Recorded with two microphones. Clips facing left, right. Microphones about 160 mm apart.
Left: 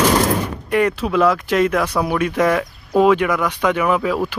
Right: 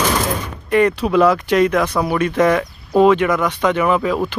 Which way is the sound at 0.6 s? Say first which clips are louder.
Right 4 dB; 5° left (ahead or behind).